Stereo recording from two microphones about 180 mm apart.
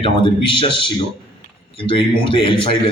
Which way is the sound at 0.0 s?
30° left (ahead or behind).